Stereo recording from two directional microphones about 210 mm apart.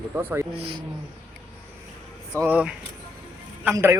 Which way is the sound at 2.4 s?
5° right (ahead or behind).